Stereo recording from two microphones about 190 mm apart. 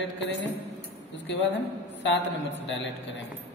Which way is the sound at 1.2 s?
70° left (ahead or behind).